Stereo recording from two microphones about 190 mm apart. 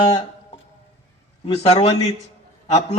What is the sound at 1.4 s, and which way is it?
A man's voice, 30° left (ahead or behind).